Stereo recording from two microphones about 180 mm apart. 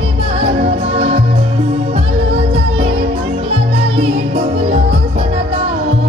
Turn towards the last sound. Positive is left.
turn(degrees=-30)  # may be behind; listen again after turning